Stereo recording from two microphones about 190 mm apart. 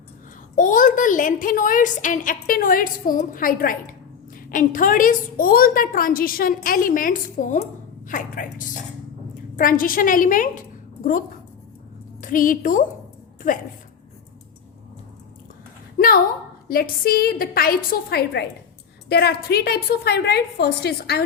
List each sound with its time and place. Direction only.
0.5 s a woman's voice: 45° left (ahead or behind)
12.2 s a woman's voice: 45° left (ahead or behind)
16.0 s a woman's voice: 50° left (ahead or behind)